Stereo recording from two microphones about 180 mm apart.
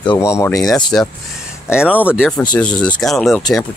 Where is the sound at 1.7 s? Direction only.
5° right (ahead or behind).